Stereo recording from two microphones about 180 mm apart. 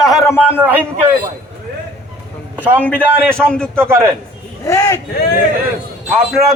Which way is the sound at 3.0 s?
10° right (ahead or behind).